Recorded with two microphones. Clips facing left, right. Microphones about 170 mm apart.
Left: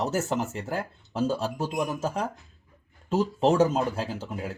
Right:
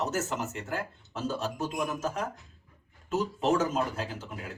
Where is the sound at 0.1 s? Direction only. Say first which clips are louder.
Left 4 dB; 30° left (ahead or behind).